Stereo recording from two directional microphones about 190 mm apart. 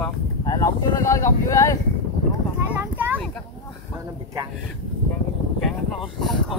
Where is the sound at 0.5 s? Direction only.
15° left (ahead or behind).